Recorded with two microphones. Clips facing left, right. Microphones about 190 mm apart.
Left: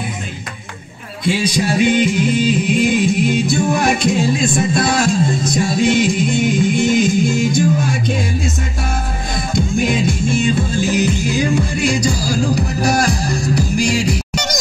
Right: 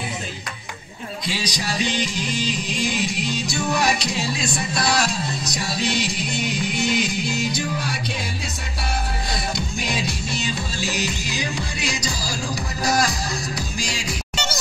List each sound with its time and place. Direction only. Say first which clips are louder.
1.2 s music: left 12 dB; 50° left (ahead or behind)
9.5 s music: left 14 dB; 50° left (ahead or behind)